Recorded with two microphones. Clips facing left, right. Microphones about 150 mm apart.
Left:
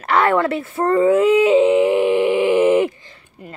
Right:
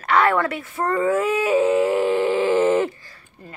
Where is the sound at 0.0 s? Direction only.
25° left (ahead or behind).